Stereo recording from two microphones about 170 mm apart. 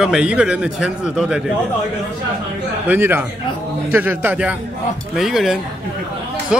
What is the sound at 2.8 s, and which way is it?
A man's voice, 15° right (ahead or behind).